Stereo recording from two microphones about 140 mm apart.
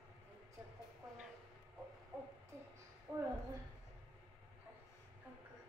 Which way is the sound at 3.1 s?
25° right (ahead or behind).